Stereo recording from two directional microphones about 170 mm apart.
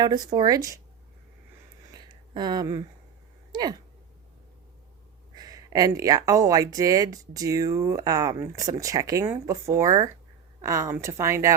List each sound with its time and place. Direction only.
0.0 s speech: 25° right (ahead or behind)
1.9 s a sound: 25° right (ahead or behind)
3.5 s speech: 25° right (ahead or behind)
5.3 s a woman's voice: 25° right (ahead or behind)